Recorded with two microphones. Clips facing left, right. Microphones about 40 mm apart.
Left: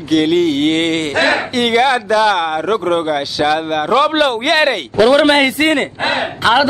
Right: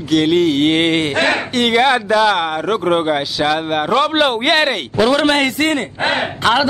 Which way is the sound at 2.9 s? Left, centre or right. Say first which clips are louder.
Right 3 dB; centre.